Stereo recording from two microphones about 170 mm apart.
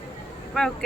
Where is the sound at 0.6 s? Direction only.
5° left (ahead or behind).